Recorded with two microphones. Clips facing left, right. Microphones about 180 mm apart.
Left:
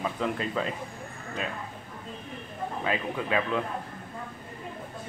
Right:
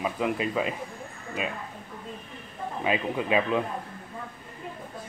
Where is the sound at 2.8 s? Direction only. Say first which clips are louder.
Right 4 dB; 15° right (ahead or behind).